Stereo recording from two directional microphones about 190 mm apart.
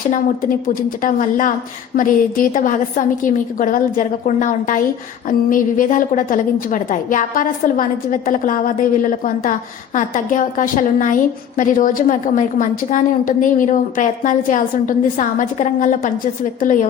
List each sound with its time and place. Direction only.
0.7 s a woman's voice: 45° left (ahead or behind)